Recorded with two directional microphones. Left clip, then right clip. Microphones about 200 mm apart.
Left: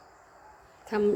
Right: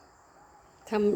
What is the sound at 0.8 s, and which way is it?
Speech, 20° right (ahead or behind).